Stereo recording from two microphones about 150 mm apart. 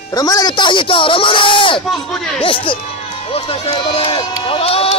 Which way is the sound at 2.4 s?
35° left (ahead or behind).